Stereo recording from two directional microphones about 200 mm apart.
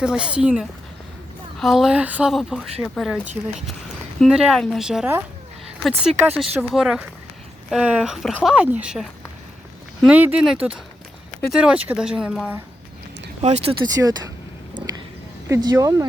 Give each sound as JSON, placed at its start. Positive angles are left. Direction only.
{"t": 0.0, "sound": "speech", "side_deg": -5}
{"t": 4.2, "sound": "speech", "side_deg": -5}
{"t": 13.4, "sound": "speech", "side_deg": -30}
{"t": 13.8, "sound": "speech", "side_deg": -20}
{"t": 14.8, "sound": "a sound", "side_deg": -20}
{"t": 15.4, "sound": "speech", "side_deg": -15}